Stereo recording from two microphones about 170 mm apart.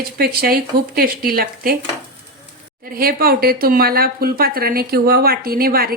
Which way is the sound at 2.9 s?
60° right (ahead or behind).